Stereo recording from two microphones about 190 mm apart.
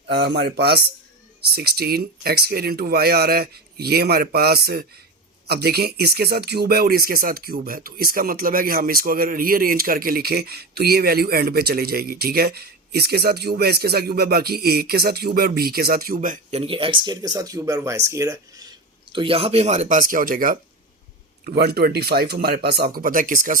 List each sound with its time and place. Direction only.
0.1 s speech: 60° right (ahead or behind); by 18.7 s 20° right (ahead or behind)
19.1 s speech: 30° right (ahead or behind); by 20.6 s 45° right (ahead or behind)
21.4 s speech: 55° right (ahead or behind)